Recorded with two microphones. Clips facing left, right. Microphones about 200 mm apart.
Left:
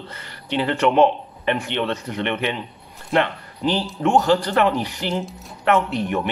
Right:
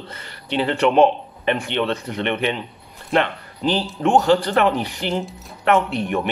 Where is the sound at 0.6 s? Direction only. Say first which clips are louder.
Right 1 dB; 20° right (ahead or behind).